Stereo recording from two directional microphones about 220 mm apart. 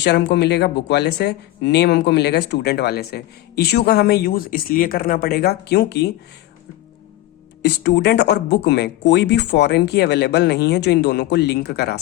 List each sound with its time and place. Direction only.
0.0 s speech: 50° left (ahead or behind)
7.6 s speech: 50° left (ahead or behind)